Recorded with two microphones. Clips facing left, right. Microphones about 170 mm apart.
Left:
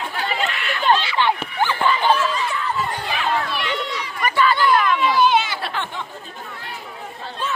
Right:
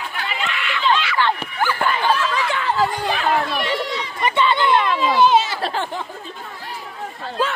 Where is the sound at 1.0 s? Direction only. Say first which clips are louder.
Even; 20° left (ahead or behind).